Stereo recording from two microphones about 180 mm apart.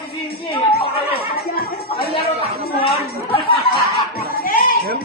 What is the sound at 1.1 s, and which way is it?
Chatter, 55° left (ahead or behind).